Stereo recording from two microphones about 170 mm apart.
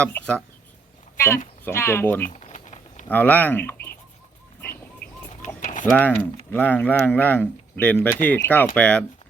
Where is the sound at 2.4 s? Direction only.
45° left (ahead or behind).